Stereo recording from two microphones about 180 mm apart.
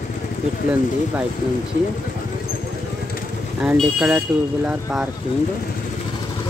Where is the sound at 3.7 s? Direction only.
5° right (ahead or behind).